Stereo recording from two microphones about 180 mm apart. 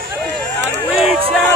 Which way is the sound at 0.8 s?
Centre (ahead or behind).